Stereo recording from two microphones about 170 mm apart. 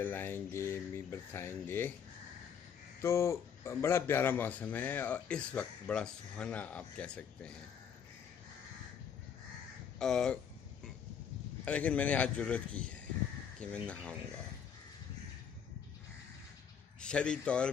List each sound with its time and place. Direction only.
0.0 s a man's voice: 10° left (ahead or behind)
3.0 s a man's voice: 15° left (ahead or behind)
9.9 s speech: 5° left (ahead or behind)
11.6 s a man's voice: 10° left (ahead or behind)
17.0 s a man's voice: 5° left (ahead or behind)